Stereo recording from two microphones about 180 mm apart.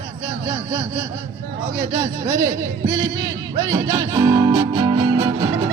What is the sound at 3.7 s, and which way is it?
Music, 20° right (ahead or behind).